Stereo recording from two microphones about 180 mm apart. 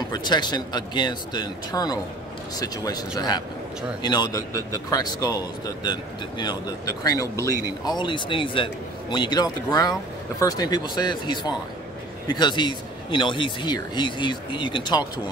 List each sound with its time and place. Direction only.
0.1 s speech: 25° left (ahead or behind)